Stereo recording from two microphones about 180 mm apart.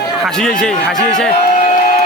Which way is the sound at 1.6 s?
45° left (ahead or behind).